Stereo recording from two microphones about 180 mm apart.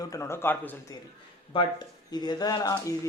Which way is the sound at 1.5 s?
25° left (ahead or behind).